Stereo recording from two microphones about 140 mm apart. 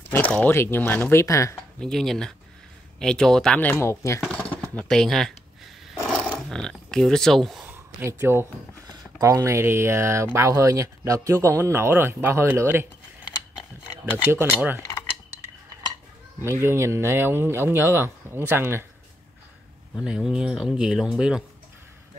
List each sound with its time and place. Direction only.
0.0 s speech: 10° left (ahead or behind)
1.8 s speech: 5° left (ahead or behind)
3.8 s speech: 20° left (ahead or behind)
4.3 s a sound: 10° left (ahead or behind)
4.7 s speech: 5° left (ahead or behind)
7.6 s a sound: 15° right (ahead or behind)
8.8 s speech: 20° right (ahead or behind)
14.1 s speech: 15° right (ahead or behind)
14.8 s cutlery: 25° left (ahead or behind)
16.4 s speech: 20° right (ahead or behind)
20.0 s speech: 5° right (ahead or behind)